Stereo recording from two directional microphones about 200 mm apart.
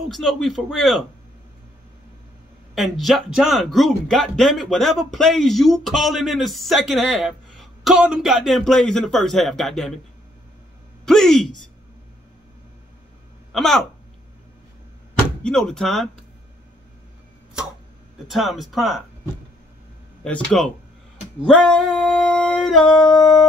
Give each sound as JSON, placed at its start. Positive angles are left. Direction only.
{"t": 0.1, "sound": "speech", "side_deg": 0}
{"t": 2.7, "sound": "speech", "side_deg": 0}
{"t": 11.1, "sound": "speech", "side_deg": 0}
{"t": 13.5, "sound": "speech", "side_deg": 0}
{"t": 15.4, "sound": "speech", "side_deg": 5}
{"t": 18.2, "sound": "speech", "side_deg": 0}
{"t": 21.5, "sound": "speech", "side_deg": 0}
{"t": 22.8, "sound": "a sound", "side_deg": 20}